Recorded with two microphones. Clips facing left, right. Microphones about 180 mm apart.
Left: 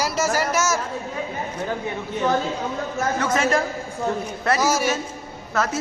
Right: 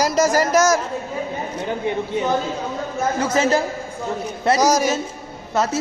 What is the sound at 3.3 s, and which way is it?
Speech, 30° right (ahead or behind).